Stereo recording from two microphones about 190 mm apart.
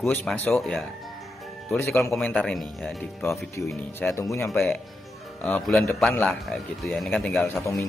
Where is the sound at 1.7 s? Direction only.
15° left (ahead or behind).